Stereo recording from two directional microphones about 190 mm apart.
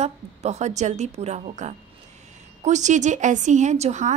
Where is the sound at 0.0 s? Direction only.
35° right (ahead or behind).